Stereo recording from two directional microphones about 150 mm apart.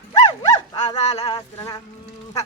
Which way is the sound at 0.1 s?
25° left (ahead or behind).